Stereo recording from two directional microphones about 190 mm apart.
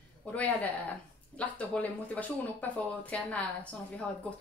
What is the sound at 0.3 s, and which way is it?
Speech, 10° left (ahead or behind).